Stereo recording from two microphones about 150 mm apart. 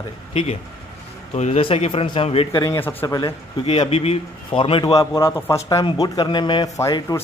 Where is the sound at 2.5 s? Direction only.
25° left (ahead or behind).